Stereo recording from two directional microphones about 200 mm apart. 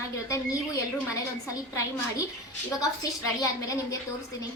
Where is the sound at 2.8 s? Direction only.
15° left (ahead or behind).